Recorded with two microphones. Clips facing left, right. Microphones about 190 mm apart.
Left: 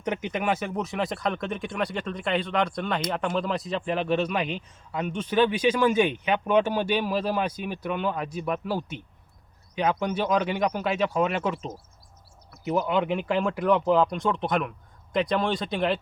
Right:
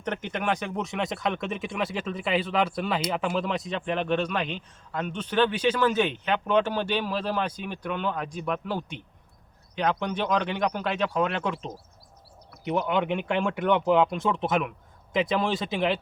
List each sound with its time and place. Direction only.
0.0 s speech: 10° left (ahead or behind)